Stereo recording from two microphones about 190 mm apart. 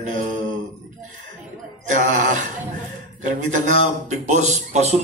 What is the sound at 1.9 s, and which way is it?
A man's voice, 40° right (ahead or behind).